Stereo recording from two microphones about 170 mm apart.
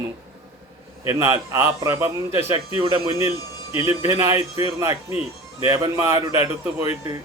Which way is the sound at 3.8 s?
20° right (ahead or behind).